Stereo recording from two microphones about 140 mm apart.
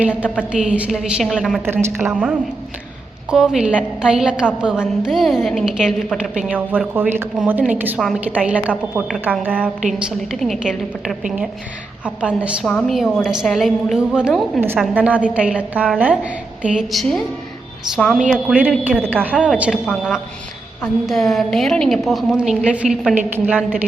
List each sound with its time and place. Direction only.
0.0 s speech: 10° right (ahead or behind)
1.6 s speech: 15° right (ahead or behind)
3.2 s a woman's voice: 5° right (ahead or behind)
10.1 s a woman's voice: centre (ahead or behind)
12.6 s a woman's voice: centre (ahead or behind)